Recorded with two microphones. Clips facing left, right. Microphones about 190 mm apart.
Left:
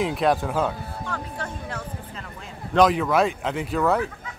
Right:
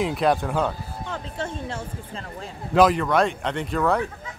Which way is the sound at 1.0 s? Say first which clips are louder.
Right 3 dB; 25° right (ahead or behind).